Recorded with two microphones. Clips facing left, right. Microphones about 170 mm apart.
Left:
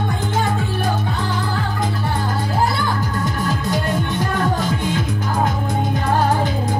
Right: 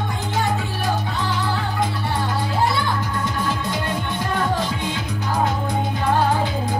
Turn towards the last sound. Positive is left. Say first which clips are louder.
# left 4 dB
turn(degrees=45)  # may be behind; listen again after turning